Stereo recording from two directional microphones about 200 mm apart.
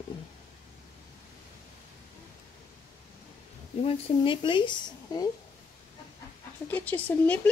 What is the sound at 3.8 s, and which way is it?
Speech, 25° left (ahead or behind).